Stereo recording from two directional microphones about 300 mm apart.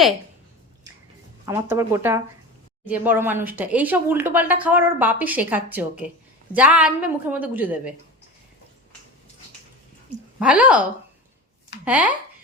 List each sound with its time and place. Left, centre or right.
0.9 s a sound: centre
1.5 s speech: centre
10.4 s speech: centre
11.9 s speech: centre